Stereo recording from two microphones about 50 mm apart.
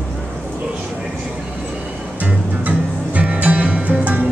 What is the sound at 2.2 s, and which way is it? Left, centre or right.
Music, right.